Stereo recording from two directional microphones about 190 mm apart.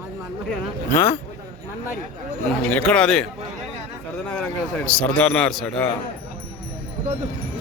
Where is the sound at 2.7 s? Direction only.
5° left (ahead or behind).